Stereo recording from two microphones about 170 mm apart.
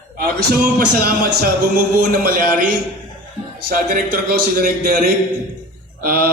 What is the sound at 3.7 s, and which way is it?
Mantra, 60° right (ahead or behind).